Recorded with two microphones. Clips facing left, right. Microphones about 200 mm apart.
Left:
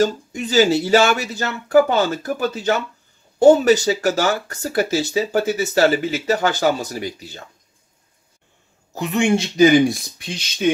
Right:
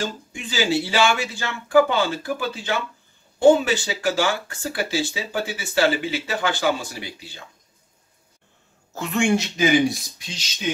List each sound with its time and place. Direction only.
0.0 s speech: 40° left (ahead or behind)
8.9 s speech: 20° left (ahead or behind)
10.1 s speech: 55° left (ahead or behind)